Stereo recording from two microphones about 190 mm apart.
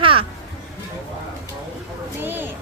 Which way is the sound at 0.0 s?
30° right (ahead or behind).